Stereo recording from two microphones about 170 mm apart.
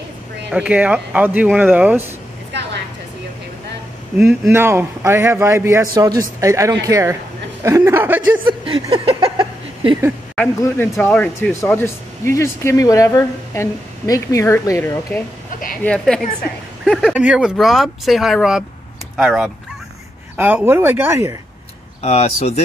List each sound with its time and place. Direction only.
0.5 s a man's voice: 5° right (ahead or behind)
4.5 s a man's voice: 15° right (ahead or behind)
8.5 s a sound: 30° right (ahead or behind)
10.3 s speech: 5° left (ahead or behind)
15.8 s a man's voice: 5° left (ahead or behind); by 21.4 s 15° right (ahead or behind)
22.0 s speech: 35° left (ahead or behind)